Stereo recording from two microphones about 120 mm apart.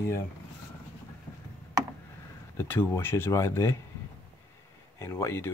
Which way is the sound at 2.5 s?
15° left (ahead or behind).